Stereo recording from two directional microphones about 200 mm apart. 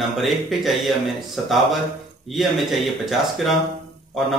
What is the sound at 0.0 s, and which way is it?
Speech, centre (ahead or behind).